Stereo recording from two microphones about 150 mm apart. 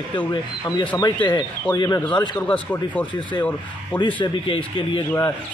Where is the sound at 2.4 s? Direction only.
10° left (ahead or behind).